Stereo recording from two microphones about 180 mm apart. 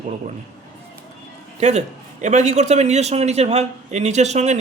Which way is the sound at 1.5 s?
40° right (ahead or behind).